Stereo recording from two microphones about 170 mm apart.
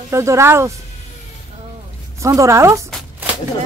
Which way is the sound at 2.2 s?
20° right (ahead or behind).